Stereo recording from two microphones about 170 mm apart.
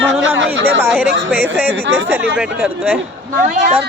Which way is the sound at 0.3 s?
90° right.